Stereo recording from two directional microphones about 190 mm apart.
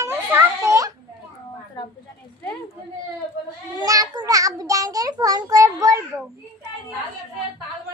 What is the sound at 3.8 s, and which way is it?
Child singing, 20° right (ahead or behind).